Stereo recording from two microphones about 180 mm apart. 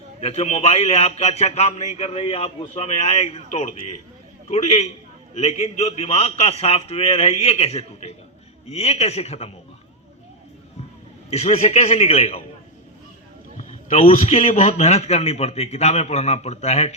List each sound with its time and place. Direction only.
0.2 s a man's voice: 35° left (ahead or behind)
11.3 s a man's voice: 35° left (ahead or behind)
13.6 s a man's voice: 45° left (ahead or behind)